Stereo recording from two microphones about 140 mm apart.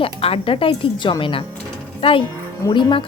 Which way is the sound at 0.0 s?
40° left (ahead or behind).